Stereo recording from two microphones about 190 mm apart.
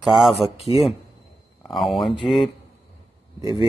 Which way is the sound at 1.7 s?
Centre (ahead or behind).